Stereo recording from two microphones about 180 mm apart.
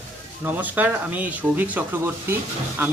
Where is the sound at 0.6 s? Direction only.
10° right (ahead or behind).